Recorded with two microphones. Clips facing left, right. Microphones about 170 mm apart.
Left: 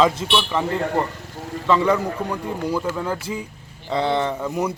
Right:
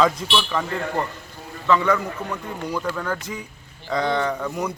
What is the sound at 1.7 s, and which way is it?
Speech, 30° left (ahead or behind).